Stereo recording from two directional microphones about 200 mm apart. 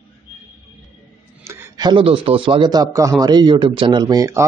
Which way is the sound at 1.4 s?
15° right (ahead or behind).